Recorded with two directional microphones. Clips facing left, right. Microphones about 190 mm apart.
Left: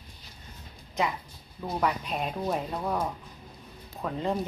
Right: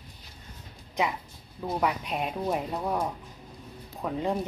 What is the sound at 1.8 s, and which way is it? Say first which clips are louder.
Speech: left 1 dB; 15° right (ahead or behind).